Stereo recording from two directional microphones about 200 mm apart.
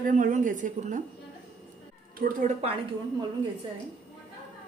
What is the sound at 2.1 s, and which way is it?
Speech, 45° right (ahead or behind).